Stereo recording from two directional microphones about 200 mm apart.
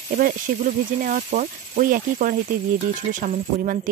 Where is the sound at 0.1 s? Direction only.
45° right (ahead or behind).